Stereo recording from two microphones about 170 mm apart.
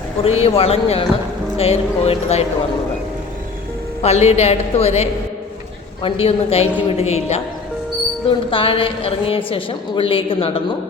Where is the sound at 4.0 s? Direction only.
40° left (ahead or behind).